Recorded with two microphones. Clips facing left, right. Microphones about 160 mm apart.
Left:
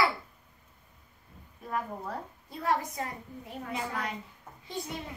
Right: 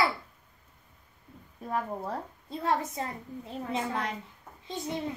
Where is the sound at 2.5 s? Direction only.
25° right (ahead or behind).